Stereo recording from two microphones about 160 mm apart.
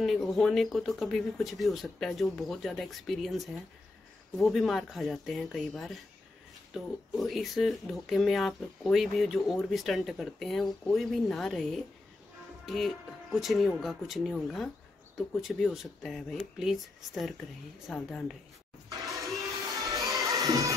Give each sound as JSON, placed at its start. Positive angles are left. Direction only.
{"t": 0.0, "sound": "speech", "side_deg": 0}
{"t": 19.9, "sound": "music", "side_deg": -20}